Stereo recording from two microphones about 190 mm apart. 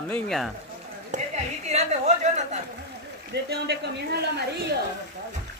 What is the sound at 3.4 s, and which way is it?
Speech, 60° right (ahead or behind).